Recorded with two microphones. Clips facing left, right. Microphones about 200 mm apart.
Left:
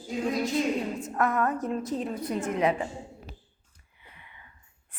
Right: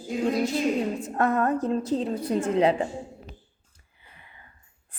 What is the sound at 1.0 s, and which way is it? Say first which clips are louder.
A woman's voice: right 1 dB; 30° right (ahead or behind).